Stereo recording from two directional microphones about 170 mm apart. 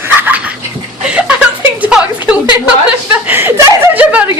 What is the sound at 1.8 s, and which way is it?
Speech, 10° right (ahead or behind).